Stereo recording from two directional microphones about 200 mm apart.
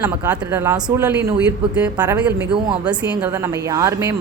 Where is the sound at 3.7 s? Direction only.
15° right (ahead or behind).